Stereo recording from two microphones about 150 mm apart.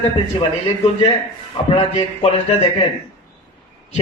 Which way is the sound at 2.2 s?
45° left (ahead or behind).